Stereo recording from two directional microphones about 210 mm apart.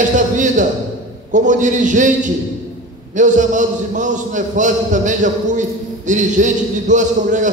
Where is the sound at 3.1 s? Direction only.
35° right (ahead or behind).